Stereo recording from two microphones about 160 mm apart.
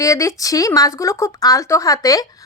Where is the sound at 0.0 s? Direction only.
20° left (ahead or behind).